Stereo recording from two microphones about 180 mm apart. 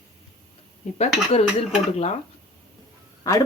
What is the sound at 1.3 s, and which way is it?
Speech, 35° left (ahead or behind).